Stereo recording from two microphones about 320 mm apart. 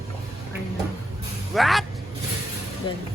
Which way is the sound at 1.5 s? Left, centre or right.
Centre.